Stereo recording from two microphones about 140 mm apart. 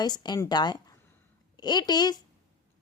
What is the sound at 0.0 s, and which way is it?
A woman's voice, 30° left (ahead or behind).